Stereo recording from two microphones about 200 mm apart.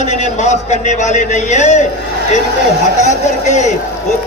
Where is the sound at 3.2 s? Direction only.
35° left (ahead or behind).